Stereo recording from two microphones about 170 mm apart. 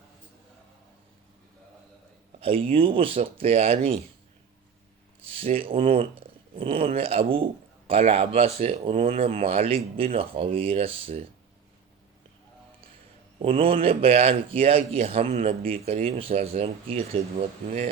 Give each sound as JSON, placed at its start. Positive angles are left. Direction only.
{"t": 2.4, "sound": "a man's voice", "side_deg": -35}
{"t": 5.3, "sound": "a man's voice", "side_deg": -35}
{"t": 13.8, "sound": "a man's voice", "side_deg": -35}